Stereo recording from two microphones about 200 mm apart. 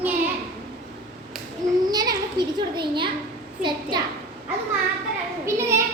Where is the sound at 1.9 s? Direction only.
20° right (ahead or behind).